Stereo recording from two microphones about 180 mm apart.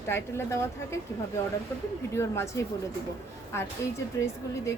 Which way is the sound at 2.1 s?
15° left (ahead or behind).